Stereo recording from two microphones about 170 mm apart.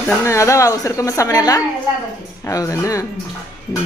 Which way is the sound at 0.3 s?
15° left (ahead or behind).